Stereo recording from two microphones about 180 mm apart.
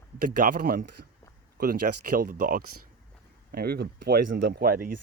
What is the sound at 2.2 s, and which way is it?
Speech, 50° right (ahead or behind).